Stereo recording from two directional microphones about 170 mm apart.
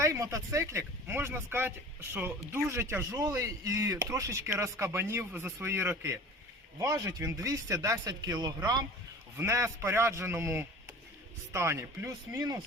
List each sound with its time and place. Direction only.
0.0 s speech: 20° right (ahead or behind)